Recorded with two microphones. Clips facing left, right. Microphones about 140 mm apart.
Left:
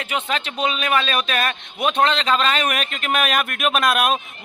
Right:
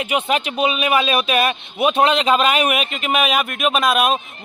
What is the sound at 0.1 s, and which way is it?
Speech, 10° right (ahead or behind).